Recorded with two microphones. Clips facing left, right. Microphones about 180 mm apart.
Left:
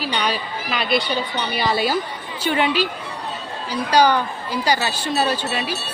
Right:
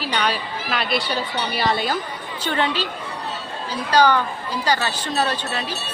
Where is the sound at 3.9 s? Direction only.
10° left (ahead or behind).